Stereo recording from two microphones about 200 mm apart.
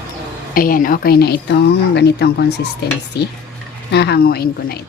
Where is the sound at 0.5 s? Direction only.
45° left (ahead or behind).